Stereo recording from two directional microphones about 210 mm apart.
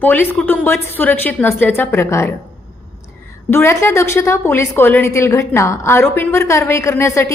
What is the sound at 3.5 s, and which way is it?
A woman's voice, 10° left (ahead or behind).